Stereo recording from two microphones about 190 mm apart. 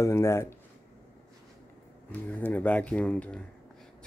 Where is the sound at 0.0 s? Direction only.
15° left (ahead or behind).